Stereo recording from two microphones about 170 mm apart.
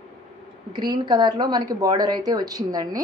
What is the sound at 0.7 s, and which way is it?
A woman's voice, 25° right (ahead or behind).